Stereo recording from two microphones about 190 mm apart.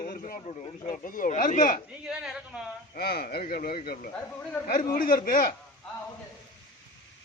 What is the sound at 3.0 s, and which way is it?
Speech, 55° left (ahead or behind).